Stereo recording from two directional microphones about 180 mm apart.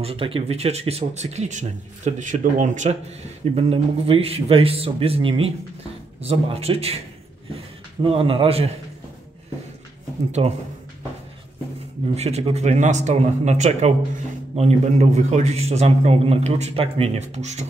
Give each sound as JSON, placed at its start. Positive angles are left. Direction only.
{"t": 0.0, "sound": "a man's voice", "side_deg": -30}
{"t": 8.0, "sound": "a man's voice", "side_deg": -30}
{"t": 10.4, "sound": "a man's voice", "side_deg": -35}
{"t": 12.2, "sound": "a man's voice", "side_deg": -35}